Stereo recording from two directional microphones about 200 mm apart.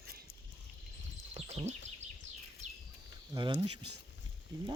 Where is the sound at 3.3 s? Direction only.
25° right (ahead or behind).